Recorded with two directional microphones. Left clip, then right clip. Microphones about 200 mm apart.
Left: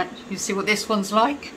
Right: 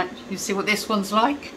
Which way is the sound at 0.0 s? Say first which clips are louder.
Even; 10° left (ahead or behind).